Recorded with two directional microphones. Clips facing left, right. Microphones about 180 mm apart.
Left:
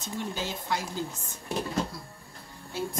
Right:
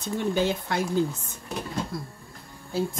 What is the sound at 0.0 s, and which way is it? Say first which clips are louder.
Speech: right 9 dB; 60° right (ahead or behind).